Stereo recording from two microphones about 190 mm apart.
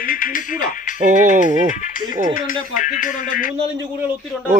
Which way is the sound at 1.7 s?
40° left (ahead or behind).